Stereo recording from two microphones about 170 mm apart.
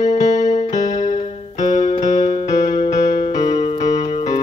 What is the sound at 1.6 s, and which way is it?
Music, 45° left (ahead or behind).